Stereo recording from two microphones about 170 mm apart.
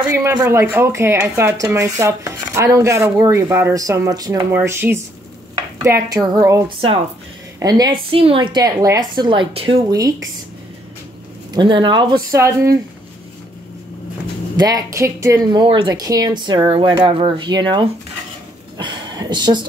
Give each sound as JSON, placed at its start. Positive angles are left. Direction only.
{"t": 0.1, "sound": "a woman's voice", "side_deg": -15}
{"t": 8.1, "sound": "speech", "side_deg": -35}
{"t": 9.8, "sound": "speech", "side_deg": -20}
{"t": 11.5, "sound": "speech", "side_deg": -25}
{"t": 14.6, "sound": "speech", "side_deg": -20}